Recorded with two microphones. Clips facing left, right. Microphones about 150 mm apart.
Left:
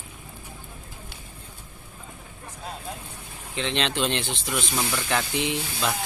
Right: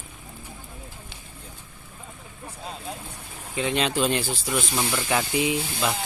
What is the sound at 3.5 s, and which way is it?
Speech, 5° right (ahead or behind).